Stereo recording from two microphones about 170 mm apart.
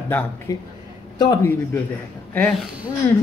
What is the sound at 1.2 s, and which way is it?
Speech, 25° left (ahead or behind).